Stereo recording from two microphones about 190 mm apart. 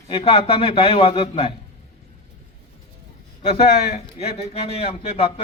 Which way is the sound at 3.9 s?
35° left (ahead or behind).